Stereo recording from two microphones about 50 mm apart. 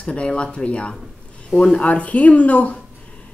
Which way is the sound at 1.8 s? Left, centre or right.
Left.